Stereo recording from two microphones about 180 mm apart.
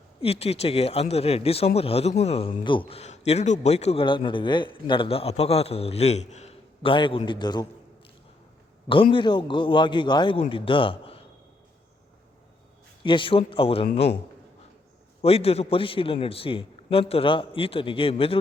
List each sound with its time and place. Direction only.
0.2 s a man's voice: 35° left (ahead or behind)
9.1 s a man's voice: 25° left (ahead or behind)
13.0 s a man's voice: 25° left (ahead or behind)
15.2 s a man's voice: 35° left (ahead or behind)